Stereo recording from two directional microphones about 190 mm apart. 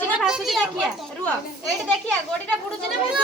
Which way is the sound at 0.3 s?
Centre (ahead or behind).